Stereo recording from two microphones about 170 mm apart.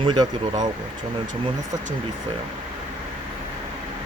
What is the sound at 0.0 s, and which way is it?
Speech, 25° right (ahead or behind).